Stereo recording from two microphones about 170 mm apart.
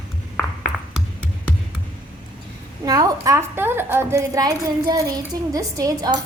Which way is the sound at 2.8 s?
20° right (ahead or behind).